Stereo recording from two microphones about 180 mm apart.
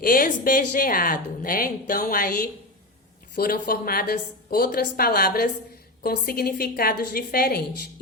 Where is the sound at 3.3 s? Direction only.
55° left (ahead or behind).